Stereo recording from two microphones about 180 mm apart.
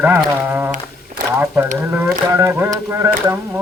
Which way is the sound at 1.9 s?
15° right (ahead or behind).